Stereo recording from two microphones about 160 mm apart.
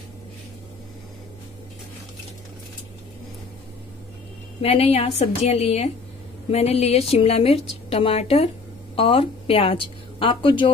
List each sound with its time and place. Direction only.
4.6 s a woman's voice: 40° left (ahead or behind)